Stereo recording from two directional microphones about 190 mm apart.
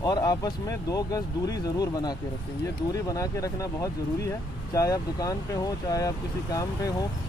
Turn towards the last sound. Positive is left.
turn(degrees=20)  # may be behind; listen again after turning